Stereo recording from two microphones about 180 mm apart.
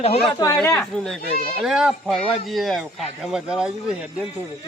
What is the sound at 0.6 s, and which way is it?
A man's voice, 5° left (ahead or behind).